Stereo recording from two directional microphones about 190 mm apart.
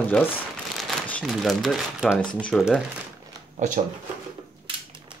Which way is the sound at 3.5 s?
40° right (ahead or behind).